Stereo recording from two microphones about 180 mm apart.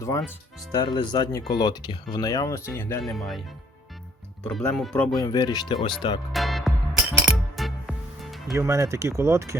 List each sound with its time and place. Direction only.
0.2 s speech: centre (ahead or behind)
0.7 s speech: 25° left (ahead or behind)
3.0 s speech: centre (ahead or behind)
4.4 s speech: centre (ahead or behind)
5.1 s speech: 20° left (ahead or behind)
6.3 s music: centre (ahead or behind)
8.5 s speech: 15° right (ahead or behind)